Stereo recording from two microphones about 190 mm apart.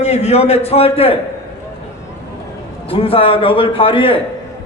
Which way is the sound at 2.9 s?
30° left (ahead or behind).